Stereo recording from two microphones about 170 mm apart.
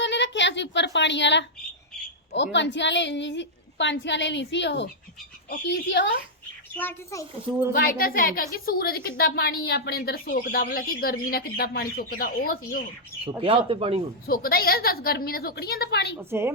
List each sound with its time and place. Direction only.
0.0 s a sound: 90° left
2.3 s a woman's voice: 90° left
6.7 s a child's voice: 15° left (ahead or behind)
7.7 s a woman's voice: 60° left (ahead or behind)
13.4 s speech: 30° right (ahead or behind)
14.3 s a woman's voice: 60° left (ahead or behind); by 16.1 s 75° left (ahead or behind)
16.1 s speech: 15° right (ahead or behind)